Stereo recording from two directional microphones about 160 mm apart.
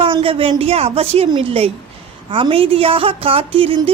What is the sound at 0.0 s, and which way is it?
A woman's voice, 35° right (ahead or behind).